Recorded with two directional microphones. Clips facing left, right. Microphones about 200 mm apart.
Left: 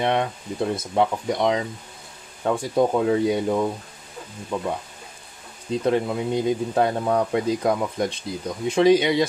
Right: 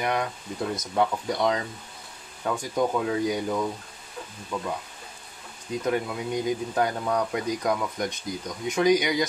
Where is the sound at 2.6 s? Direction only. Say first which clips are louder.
Left 5 dB; 30° left (ahead or behind).